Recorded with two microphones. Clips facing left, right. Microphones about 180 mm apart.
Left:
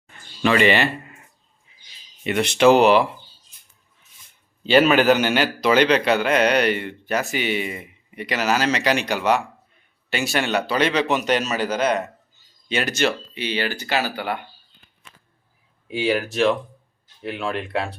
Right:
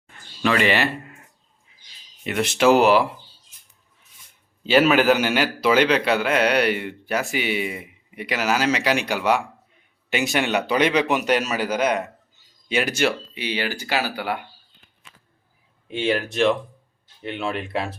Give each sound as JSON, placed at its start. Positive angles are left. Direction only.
{"t": 0.4, "sound": "speech", "side_deg": 0}
{"t": 1.7, "sound": "a sound", "side_deg": 0}
{"t": 2.2, "sound": "speech", "side_deg": 0}
{"t": 4.6, "sound": "a man's voice", "side_deg": -5}
{"t": 15.9, "sound": "speech", "side_deg": 5}